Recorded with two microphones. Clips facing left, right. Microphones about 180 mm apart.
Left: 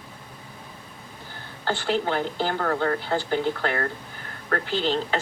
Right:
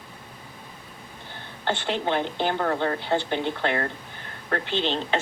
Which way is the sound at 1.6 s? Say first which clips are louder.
Left 1 dB; 25° right (ahead or behind).